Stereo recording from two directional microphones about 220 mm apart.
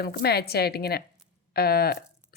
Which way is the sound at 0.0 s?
45° left (ahead or behind).